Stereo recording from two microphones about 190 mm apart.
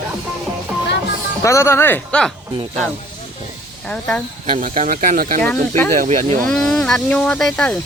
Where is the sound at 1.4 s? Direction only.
15° left (ahead or behind).